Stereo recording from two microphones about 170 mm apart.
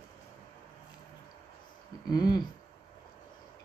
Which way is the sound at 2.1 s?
25° left (ahead or behind).